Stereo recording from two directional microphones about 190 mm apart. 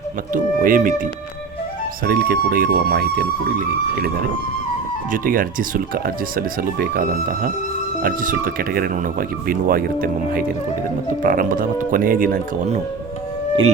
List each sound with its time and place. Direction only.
0.3 s speech: 45° right (ahead or behind)
2.0 s speech: 55° right (ahead or behind)
5.1 s speech: 45° right (ahead or behind)